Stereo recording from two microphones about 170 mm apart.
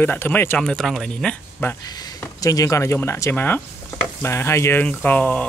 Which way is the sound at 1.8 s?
20° left (ahead or behind).